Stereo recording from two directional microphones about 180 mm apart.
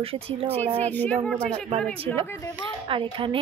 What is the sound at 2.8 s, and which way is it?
Speech, 30° right (ahead or behind).